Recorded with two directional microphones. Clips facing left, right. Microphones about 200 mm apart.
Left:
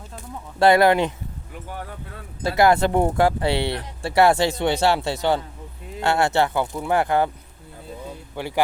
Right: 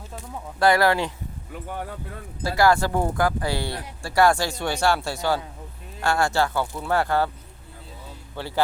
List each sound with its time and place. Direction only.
0.6 s speech: 20° left (ahead or behind)
2.4 s speech: 20° left (ahead or behind)
8.4 s a man's voice: 15° left (ahead or behind)